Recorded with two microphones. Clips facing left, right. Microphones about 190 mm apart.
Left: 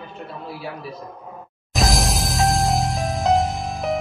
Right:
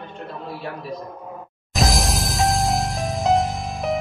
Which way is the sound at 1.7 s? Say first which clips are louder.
Even; centre (ahead or behind).